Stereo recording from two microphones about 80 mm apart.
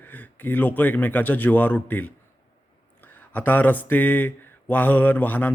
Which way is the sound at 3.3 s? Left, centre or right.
Left.